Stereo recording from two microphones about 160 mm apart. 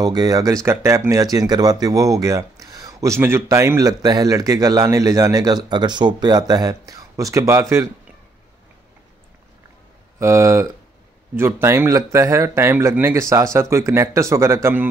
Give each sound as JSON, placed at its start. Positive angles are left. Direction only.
{"t": 0.0, "sound": "speech", "side_deg": -25}
{"t": 10.1, "sound": "speech", "side_deg": -15}